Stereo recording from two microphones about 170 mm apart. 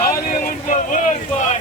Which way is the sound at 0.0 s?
50° left (ahead or behind).